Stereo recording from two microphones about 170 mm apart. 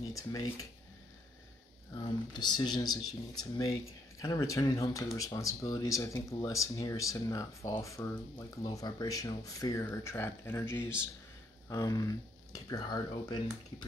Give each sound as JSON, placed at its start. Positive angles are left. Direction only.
{"t": 0.1, "sound": "speech", "side_deg": 20}
{"t": 2.0, "sound": "speech", "side_deg": 25}
{"t": 4.2, "sound": "speech", "side_deg": 20}